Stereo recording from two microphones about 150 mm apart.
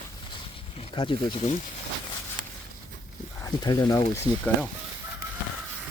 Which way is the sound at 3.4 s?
25° left (ahead or behind).